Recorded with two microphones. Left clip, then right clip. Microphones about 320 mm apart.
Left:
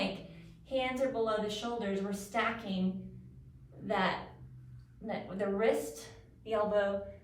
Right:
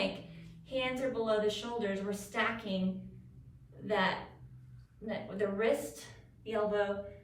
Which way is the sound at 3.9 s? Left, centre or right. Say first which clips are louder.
Even; centre.